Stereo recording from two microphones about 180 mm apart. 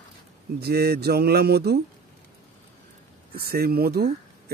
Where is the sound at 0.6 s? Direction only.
60° right (ahead or behind).